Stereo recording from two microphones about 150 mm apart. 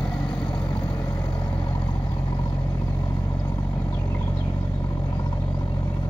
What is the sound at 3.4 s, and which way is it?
Vehicle, 20° left (ahead or behind).